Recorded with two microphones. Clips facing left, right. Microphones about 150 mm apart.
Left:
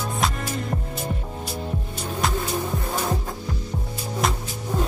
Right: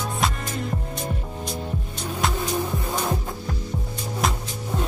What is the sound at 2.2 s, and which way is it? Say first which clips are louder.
Music: even; centre (ahead or behind).